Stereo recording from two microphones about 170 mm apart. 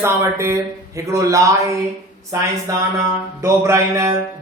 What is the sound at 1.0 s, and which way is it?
Speech, 20° right (ahead or behind).